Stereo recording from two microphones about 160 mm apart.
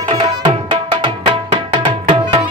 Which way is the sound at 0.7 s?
30° right (ahead or behind).